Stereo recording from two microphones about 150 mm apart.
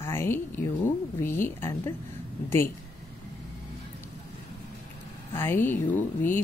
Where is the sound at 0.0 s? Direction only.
15° left (ahead or behind).